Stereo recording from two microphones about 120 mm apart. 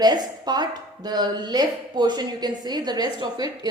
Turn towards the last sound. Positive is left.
turn(degrees=-35)  # may be behind; listen again after turning